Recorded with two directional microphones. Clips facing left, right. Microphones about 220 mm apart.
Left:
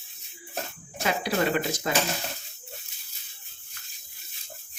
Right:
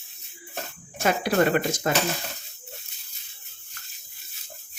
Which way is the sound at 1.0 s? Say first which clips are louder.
Right 4 dB; 50° right (ahead or behind).